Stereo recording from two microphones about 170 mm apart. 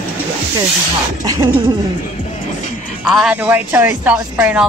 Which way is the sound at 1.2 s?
20° right (ahead or behind).